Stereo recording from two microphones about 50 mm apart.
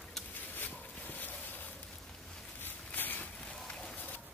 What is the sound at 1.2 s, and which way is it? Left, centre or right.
Boat, left.